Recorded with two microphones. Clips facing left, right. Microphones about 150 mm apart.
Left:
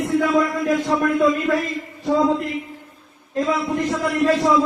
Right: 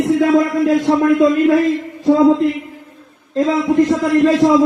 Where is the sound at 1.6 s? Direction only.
90° right.